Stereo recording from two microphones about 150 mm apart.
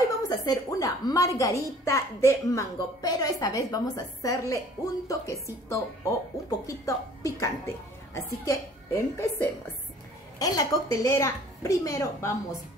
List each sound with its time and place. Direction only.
0.3 s a woman's voice: 25° left (ahead or behind)